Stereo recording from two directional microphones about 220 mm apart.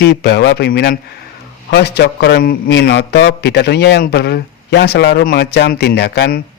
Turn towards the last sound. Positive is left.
turn(degrees=45)  # may be behind; listen again after turning